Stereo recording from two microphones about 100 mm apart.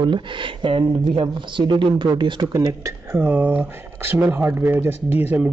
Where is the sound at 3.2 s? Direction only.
15° right (ahead or behind).